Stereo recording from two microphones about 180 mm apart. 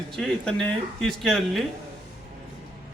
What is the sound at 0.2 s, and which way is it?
A man's voice, 5° left (ahead or behind).